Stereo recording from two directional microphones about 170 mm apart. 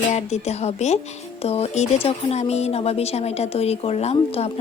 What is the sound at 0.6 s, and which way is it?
A woman's voice, 40° left (ahead or behind).